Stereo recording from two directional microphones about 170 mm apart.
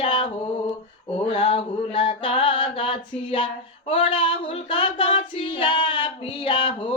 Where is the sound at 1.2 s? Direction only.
30° left (ahead or behind).